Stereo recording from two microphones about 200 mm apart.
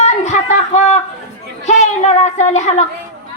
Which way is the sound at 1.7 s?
35° left (ahead or behind).